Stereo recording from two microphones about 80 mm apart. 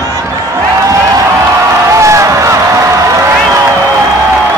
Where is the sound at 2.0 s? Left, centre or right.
Right.